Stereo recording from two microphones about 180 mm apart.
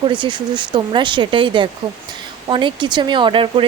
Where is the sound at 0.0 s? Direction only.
25° right (ahead or behind).